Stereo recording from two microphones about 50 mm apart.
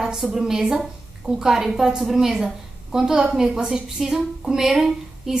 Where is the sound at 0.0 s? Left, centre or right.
Centre.